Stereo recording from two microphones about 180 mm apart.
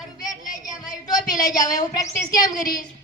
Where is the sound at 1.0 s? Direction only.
20° left (ahead or behind).